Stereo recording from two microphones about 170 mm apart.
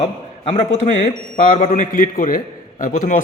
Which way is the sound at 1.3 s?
55° left (ahead or behind).